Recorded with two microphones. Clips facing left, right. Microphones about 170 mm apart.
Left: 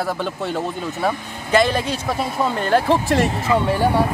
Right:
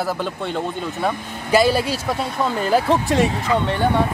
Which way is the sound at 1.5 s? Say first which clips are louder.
Right 1 dB; 5° right (ahead or behind).